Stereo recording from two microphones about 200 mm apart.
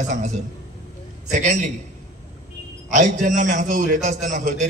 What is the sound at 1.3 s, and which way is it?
Speech, 40° right (ahead or behind).